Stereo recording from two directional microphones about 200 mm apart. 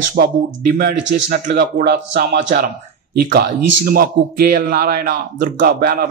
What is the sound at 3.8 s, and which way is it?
Speech, 50° right (ahead or behind).